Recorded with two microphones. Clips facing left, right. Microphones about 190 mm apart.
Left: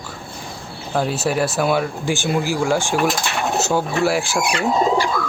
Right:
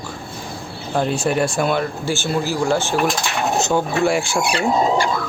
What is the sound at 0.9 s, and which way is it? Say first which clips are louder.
Speech: right 1 dB; 5° left (ahead or behind).